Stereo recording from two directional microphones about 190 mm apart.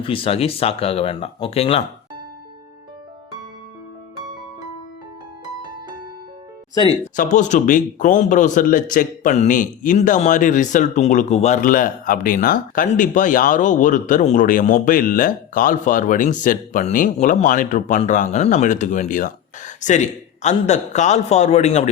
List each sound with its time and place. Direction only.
0.0 s speech: 30° left (ahead or behind)
7.2 s speech: 40° left (ahead or behind)